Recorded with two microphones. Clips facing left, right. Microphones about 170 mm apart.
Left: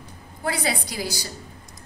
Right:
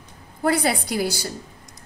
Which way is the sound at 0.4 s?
55° right (ahead or behind).